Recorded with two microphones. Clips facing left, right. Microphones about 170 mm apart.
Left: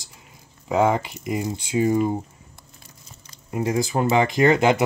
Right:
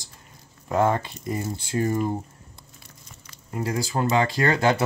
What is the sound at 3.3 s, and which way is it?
Speech, 20° left (ahead or behind).